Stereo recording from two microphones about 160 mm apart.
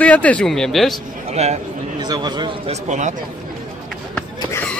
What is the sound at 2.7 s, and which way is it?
Speech, 50° right (ahead or behind).